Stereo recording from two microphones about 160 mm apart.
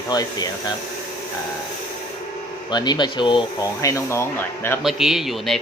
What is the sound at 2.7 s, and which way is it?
Speech, 25° left (ahead or behind).